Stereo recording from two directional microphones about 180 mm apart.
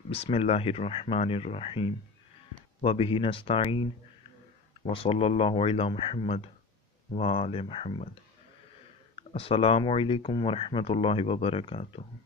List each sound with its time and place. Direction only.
0.1 s speech: 35° left (ahead or behind)